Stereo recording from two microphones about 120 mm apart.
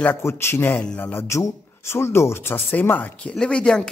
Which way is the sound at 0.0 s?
20° left (ahead or behind).